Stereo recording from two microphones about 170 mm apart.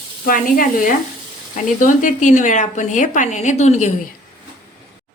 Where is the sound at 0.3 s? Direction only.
55° left (ahead or behind).